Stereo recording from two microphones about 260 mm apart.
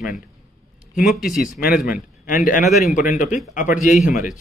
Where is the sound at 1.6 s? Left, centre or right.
Left.